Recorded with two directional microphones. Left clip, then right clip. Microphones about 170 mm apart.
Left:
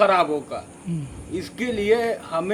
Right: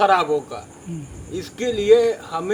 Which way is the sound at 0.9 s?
45° left (ahead or behind).